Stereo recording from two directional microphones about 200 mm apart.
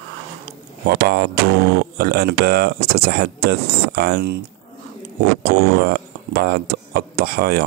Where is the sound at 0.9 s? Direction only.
50° right (ahead or behind).